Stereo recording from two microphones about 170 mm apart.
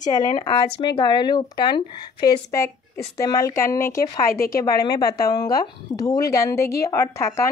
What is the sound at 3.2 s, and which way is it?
Speech, 20° left (ahead or behind).